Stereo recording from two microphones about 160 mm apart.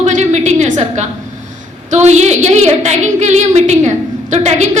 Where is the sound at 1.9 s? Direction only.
45° right (ahead or behind).